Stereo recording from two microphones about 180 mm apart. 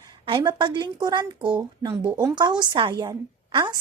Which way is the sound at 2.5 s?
25° right (ahead or behind).